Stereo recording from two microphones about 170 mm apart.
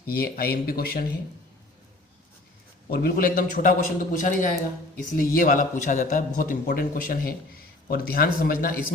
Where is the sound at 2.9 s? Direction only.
65° left (ahead or behind).